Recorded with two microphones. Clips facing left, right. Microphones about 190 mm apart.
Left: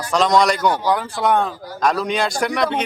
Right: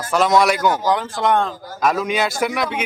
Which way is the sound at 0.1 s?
5° right (ahead or behind).